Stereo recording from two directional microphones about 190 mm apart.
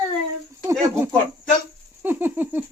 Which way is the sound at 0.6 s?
15° right (ahead or behind).